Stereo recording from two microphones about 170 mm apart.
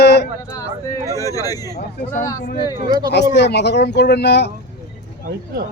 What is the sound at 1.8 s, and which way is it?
Speech, 70° left (ahead or behind).